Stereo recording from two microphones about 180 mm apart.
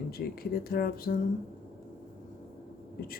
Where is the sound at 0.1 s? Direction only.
55° left (ahead or behind).